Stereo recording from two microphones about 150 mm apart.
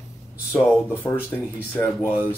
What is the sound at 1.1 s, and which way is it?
Speech, 20° left (ahead or behind).